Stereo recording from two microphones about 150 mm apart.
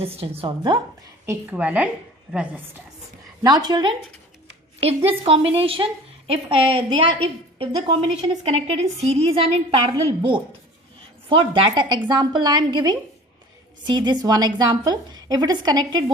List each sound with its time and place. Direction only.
0.0 s a woman's voice: 40° right (ahead or behind)
1.3 s a woman's voice: 10° right (ahead or behind)
3.4 s a woman's voice: 25° right (ahead or behind)
4.8 s a woman's voice: 40° right (ahead or behind)